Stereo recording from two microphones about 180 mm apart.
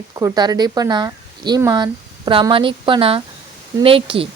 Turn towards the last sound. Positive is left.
turn(degrees=-30)  # may be behind; listen again after turning